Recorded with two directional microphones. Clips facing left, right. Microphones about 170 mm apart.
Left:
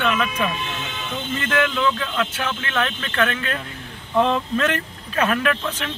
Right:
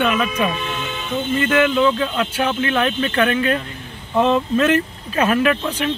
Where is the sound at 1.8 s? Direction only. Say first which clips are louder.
Right 4 dB; 20° right (ahead or behind).